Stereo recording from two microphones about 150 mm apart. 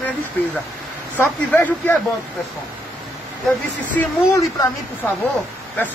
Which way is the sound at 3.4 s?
10° left (ahead or behind).